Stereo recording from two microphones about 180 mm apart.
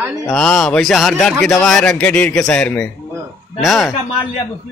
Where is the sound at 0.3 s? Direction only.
Centre (ahead or behind).